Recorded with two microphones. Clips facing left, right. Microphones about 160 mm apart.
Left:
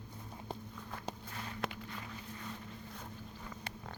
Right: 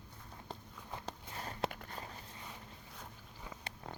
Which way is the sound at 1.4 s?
40° right (ahead or behind).